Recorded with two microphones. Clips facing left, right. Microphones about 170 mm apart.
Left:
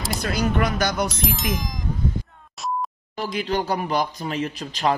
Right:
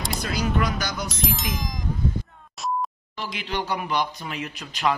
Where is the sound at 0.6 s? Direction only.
55° left (ahead or behind).